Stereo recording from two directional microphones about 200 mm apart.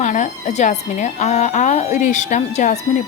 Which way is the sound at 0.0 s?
35° left (ahead or behind).